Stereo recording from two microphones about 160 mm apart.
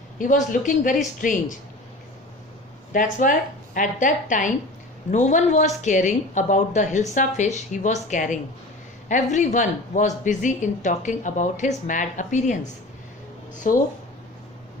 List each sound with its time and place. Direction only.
0.2 s a woman's voice: 55° left (ahead or behind)
2.9 s a woman's voice: 55° left (ahead or behind)
13.7 s a woman's voice: 55° left (ahead or behind)